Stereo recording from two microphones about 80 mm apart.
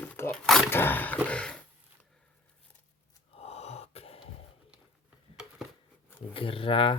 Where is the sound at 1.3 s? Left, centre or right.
Centre.